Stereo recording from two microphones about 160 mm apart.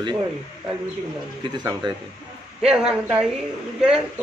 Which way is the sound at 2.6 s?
5° right (ahead or behind).